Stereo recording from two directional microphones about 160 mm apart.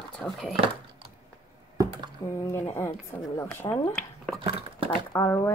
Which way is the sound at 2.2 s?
15° left (ahead or behind).